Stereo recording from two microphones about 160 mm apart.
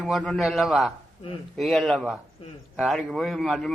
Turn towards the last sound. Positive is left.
turn(degrees=0)  # may be behind; listen again after turning